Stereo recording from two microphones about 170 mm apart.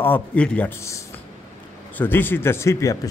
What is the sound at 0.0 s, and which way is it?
A man's voice, 10° left (ahead or behind).